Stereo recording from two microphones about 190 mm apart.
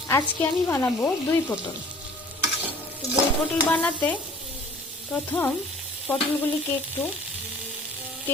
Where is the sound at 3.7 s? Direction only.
10° left (ahead or behind).